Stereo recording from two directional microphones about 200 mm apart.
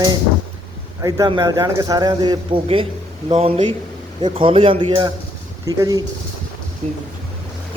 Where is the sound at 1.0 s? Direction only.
20° right (ahead or behind).